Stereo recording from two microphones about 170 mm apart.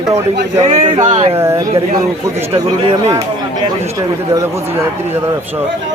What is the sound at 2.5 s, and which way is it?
Speech, 35° right (ahead or behind).